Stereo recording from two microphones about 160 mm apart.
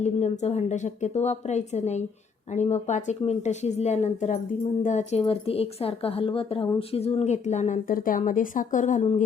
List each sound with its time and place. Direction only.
0.0 s a woman's voice: 45° left (ahead or behind)
5.2 s speech: 35° left (ahead or behind)